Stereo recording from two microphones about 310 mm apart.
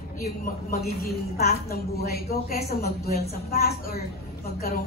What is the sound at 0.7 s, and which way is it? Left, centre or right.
A man's voice, left.